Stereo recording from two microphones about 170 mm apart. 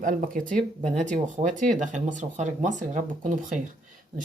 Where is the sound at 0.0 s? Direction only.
50° right (ahead or behind).